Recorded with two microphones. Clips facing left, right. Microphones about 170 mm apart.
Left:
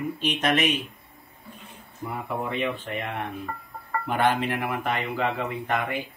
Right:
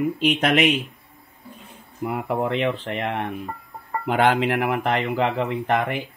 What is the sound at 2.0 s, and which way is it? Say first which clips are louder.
Speech: right 6 dB; 75° right (ahead or behind).